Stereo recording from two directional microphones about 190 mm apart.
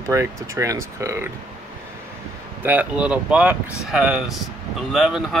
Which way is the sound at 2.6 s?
5° right (ahead or behind).